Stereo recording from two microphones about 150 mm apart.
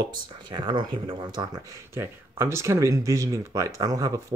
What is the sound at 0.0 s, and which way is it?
Speech, 30° right (ahead or behind).